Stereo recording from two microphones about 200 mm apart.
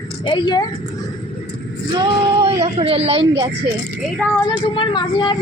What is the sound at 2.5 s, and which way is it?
Speech, 30° right (ahead or behind).